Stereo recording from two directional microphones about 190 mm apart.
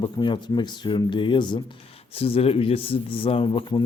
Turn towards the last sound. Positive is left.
turn(degrees=30)  # may be behind; listen again after turning